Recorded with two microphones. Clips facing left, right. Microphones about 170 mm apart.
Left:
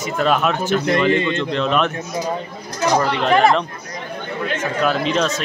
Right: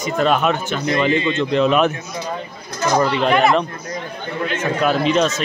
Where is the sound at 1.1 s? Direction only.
55° left (ahead or behind).